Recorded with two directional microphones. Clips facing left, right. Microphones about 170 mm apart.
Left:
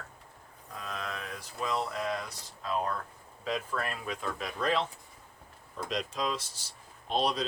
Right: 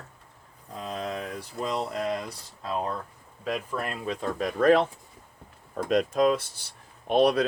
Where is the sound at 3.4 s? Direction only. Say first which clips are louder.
Right 3 dB; 10° right (ahead or behind).